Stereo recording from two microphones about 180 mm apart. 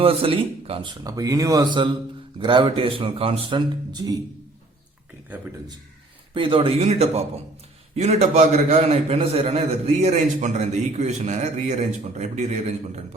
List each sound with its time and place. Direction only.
0.0 s speech: 30° right (ahead or behind)
6.3 s a man's voice: 30° right (ahead or behind)